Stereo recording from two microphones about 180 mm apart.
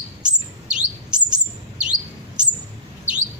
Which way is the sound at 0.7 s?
5° right (ahead or behind).